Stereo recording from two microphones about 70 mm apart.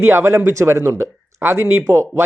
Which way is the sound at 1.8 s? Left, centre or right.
Right.